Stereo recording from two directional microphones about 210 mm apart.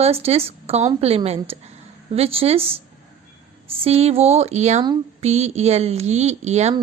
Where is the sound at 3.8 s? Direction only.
30° right (ahead or behind).